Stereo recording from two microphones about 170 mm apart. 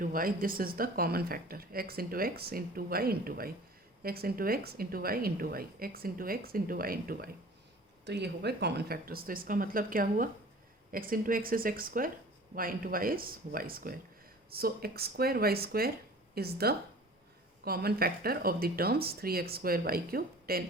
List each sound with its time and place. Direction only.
0.0 s speech: 55° right (ahead or behind)
8.0 s speech: 85° right; by 20.7 s 60° right (ahead or behind)